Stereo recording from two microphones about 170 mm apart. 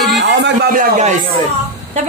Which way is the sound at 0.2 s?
90° right.